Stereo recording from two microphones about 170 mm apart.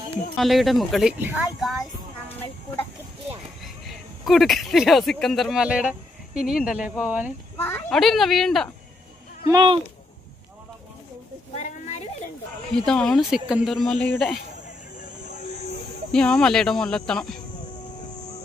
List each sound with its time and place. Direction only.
0.3 s speech: centre (ahead or behind)
3.6 s speech: centre (ahead or behind)
7.5 s a child's voice: 15° left (ahead or behind)
7.9 s speech: centre (ahead or behind)
9.5 s speech: 30° right (ahead or behind)
11.5 s a sound: 40° left (ahead or behind)
12.7 s speech: 5° left (ahead or behind)
13.8 s speech: 5° left (ahead or behind)
16.1 s speech: 5° left (ahead or behind)